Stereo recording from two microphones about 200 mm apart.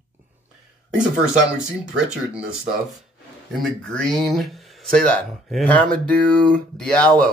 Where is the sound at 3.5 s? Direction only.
Centre (ahead or behind).